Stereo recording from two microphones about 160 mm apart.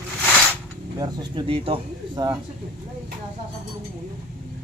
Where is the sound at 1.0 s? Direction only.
30° right (ahead or behind).